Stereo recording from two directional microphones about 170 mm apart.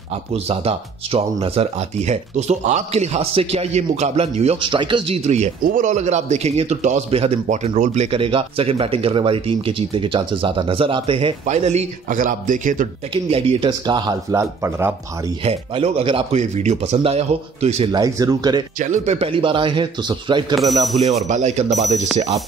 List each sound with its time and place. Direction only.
0.3 s a man's voice: 35° right (ahead or behind)
5.6 s a man's voice: 50° right (ahead or behind)
13.1 s speech: 30° right (ahead or behind); by 15.3 s 15° right (ahead or behind)
15.4 s a man's voice: 35° right (ahead or behind)
17.9 s speech: 20° right (ahead or behind)
18.8 s speech: 40° right (ahead or behind); by 20.5 s 25° right (ahead or behind)
20.5 s speech: centre (ahead or behind)
21.3 s a man's voice: 45° right (ahead or behind)